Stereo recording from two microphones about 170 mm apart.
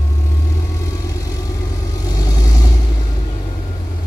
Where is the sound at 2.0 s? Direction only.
20° left (ahead or behind).